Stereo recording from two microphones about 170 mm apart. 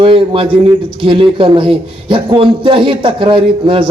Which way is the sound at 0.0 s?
30° right (ahead or behind).